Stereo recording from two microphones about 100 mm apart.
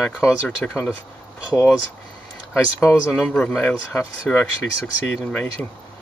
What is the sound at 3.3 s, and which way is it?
Speech, 10° left (ahead or behind).